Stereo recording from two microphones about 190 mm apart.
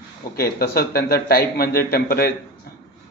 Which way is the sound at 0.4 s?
55° left (ahead or behind).